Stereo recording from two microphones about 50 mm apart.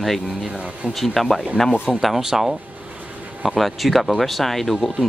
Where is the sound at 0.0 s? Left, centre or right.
Centre.